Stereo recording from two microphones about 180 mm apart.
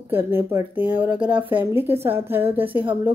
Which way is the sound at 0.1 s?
10° right (ahead or behind).